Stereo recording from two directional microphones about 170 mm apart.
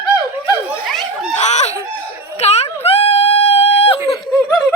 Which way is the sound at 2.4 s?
40° left (ahead or behind).